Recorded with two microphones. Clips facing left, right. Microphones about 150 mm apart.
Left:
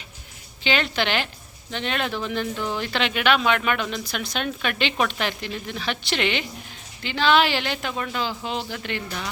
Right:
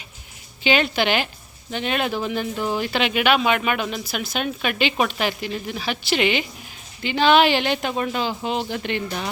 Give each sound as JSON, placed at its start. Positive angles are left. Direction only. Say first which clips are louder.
{"t": 0.6, "sound": "speech", "louder": "right 4 dB", "side_deg": -10}